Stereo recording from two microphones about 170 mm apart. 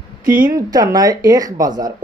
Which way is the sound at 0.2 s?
55° right (ahead or behind).